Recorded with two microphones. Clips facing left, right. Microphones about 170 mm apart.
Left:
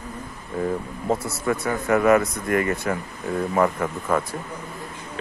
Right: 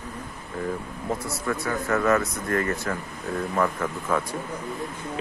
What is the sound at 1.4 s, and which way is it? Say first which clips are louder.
Speech: left 4 dB; 20° left (ahead or behind).